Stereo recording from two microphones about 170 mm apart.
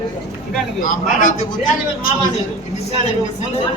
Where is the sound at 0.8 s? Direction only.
50° left (ahead or behind).